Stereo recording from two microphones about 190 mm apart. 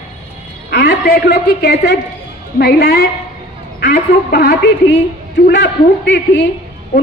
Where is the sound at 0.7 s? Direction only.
60° left (ahead or behind).